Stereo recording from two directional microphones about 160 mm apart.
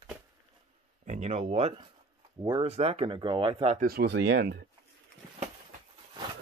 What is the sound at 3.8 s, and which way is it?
Speech, 80° right.